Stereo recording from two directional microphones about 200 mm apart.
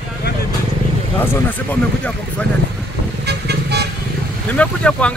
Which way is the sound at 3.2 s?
55° right (ahead or behind).